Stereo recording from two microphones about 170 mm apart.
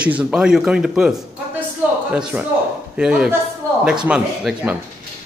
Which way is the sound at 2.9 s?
5° right (ahead or behind).